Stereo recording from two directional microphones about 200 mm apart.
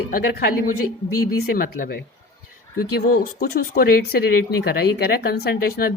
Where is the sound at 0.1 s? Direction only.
45° left (ahead or behind).